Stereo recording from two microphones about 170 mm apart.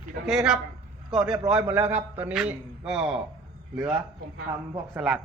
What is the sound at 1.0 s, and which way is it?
Speech, centre (ahead or behind).